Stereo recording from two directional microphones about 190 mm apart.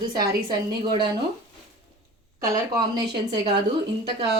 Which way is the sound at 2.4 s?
15° right (ahead or behind).